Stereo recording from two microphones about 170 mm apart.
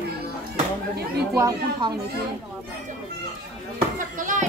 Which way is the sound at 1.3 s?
20° right (ahead or behind).